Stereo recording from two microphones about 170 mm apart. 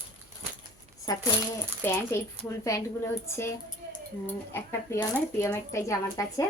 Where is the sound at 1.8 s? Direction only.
15° left (ahead or behind).